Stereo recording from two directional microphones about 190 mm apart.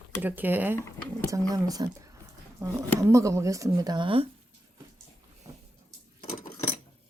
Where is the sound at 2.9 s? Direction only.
15° right (ahead or behind).